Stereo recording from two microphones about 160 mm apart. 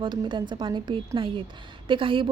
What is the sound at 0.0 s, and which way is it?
A woman's voice, 30° right (ahead or behind).